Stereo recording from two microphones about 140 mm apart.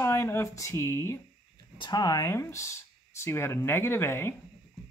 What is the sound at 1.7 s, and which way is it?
Speech, 30° left (ahead or behind).